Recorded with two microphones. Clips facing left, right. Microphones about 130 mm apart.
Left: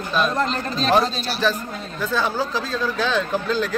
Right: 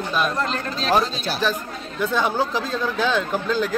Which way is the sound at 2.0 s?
20° right (ahead or behind).